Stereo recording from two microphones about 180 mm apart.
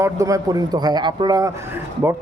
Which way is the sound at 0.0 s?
20° right (ahead or behind).